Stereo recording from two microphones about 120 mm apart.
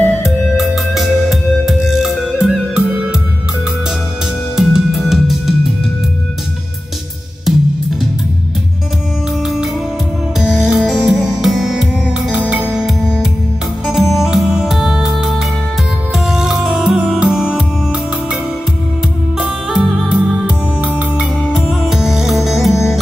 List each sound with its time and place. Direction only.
0.0 s music: 20° left (ahead or behind)
0.6 s music: centre (ahead or behind)
4.6 s music: 5° right (ahead or behind)
7.5 s music: 5° right (ahead or behind)
10.4 s music: 5° right (ahead or behind)